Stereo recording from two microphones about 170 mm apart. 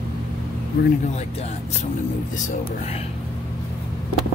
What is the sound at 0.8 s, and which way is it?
Speech, 70° left (ahead or behind).